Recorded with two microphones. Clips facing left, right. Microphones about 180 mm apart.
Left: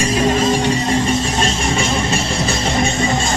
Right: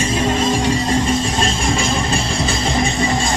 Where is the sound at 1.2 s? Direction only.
30° right (ahead or behind).